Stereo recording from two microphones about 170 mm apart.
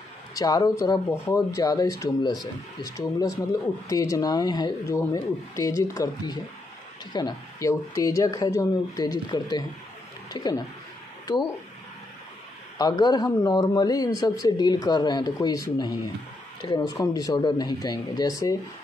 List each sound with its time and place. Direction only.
0.3 s speech: 20° left (ahead or behind)
12.7 s speech: 25° left (ahead or behind)